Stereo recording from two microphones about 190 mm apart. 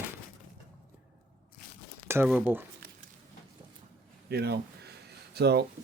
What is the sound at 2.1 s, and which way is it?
Speech, 10° right (ahead or behind).